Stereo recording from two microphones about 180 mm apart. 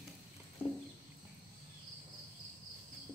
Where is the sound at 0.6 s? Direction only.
35° left (ahead or behind).